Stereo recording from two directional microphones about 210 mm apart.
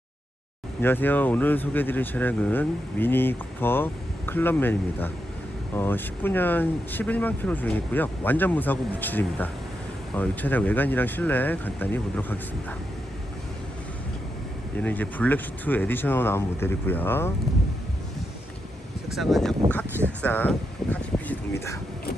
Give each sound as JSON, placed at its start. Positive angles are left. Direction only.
{"t": 0.8, "sound": "speech", "side_deg": 10}
{"t": 14.8, "sound": "speech", "side_deg": 5}
{"t": 19.1, "sound": "speech", "side_deg": 0}